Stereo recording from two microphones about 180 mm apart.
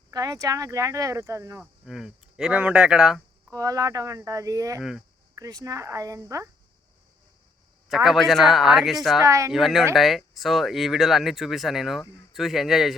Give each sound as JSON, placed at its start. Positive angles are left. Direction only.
{"t": 0.1, "sound": "speech", "side_deg": -20}
{"t": 1.8, "sound": "speech", "side_deg": 0}
{"t": 3.5, "sound": "speech", "side_deg": -20}
{"t": 4.8, "sound": "speech", "side_deg": 0}
{"t": 5.3, "sound": "speech", "side_deg": -20}
{"t": 7.9, "sound": "speech", "side_deg": 0}
{"t": 9.2, "sound": "speech", "side_deg": -15}
{"t": 9.5, "sound": "speech", "side_deg": 0}